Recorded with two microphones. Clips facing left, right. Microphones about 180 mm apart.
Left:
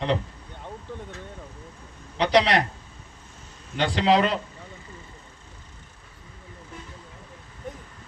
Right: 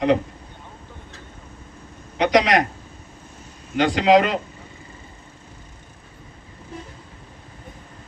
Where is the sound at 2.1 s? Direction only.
30° left (ahead or behind).